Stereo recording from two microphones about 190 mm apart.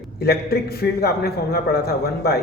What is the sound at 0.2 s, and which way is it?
A man's voice, 55° left (ahead or behind).